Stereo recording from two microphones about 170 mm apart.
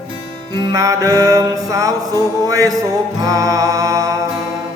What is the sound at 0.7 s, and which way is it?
Music, 20° right (ahead or behind).